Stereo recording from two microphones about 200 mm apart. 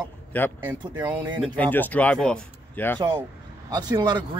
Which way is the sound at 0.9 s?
20° right (ahead or behind).